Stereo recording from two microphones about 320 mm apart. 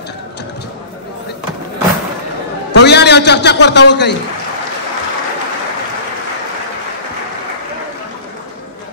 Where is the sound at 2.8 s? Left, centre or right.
Left.